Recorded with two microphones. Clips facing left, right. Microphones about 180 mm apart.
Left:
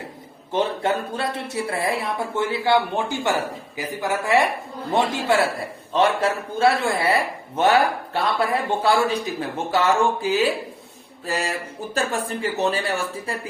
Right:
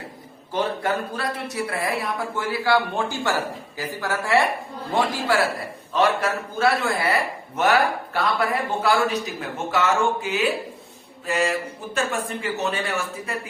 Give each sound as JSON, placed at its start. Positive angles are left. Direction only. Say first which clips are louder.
{"t": 0.5, "sound": "a man's voice", "louder": "left 2 dB", "side_deg": 25}